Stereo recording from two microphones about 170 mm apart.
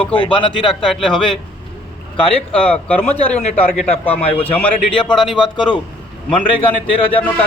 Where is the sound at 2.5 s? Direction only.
10° left (ahead or behind).